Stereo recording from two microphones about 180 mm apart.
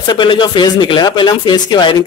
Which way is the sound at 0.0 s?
25° left (ahead or behind).